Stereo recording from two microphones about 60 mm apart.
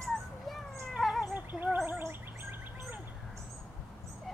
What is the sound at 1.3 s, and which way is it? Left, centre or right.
Gargling, right.